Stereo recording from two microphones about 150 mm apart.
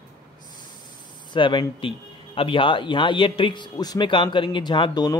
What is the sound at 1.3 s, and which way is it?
A man's voice, 30° left (ahead or behind).